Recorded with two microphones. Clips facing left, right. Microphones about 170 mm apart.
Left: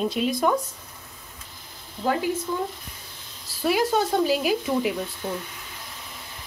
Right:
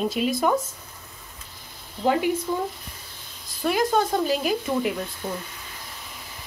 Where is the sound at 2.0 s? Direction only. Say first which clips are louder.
Right 3 dB; 20° right (ahead or behind).